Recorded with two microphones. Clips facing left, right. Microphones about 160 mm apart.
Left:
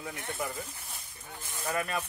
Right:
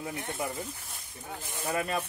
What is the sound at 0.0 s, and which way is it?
Speech, 20° right (ahead or behind).